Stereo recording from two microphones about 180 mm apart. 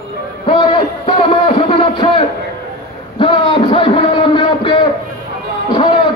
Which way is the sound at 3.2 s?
30° left (ahead or behind).